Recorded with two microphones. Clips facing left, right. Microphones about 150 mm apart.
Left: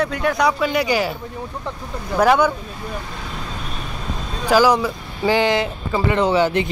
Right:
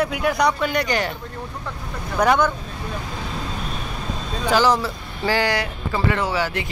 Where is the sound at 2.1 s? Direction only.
10° left (ahead or behind).